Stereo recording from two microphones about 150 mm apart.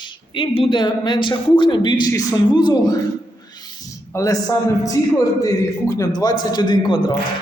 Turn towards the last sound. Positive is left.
turn(degrees=30)  # may be behind; listen again after turning